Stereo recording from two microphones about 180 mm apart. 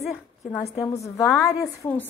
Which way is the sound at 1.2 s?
5° left (ahead or behind).